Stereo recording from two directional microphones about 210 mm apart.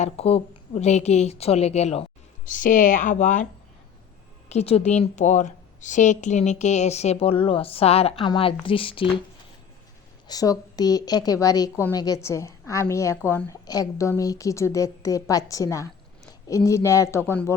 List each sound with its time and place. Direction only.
0.0 s a woman's voice: 30° left (ahead or behind)
4.4 s a woman's voice: 30° left (ahead or behind)
10.2 s a woman's voice: 15° left (ahead or behind)